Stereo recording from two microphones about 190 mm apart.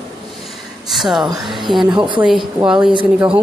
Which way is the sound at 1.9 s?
25° right (ahead or behind).